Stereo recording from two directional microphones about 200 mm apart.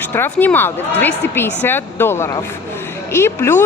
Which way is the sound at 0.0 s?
10° left (ahead or behind).